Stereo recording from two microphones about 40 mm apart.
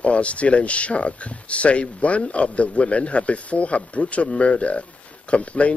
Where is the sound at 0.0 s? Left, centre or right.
Left.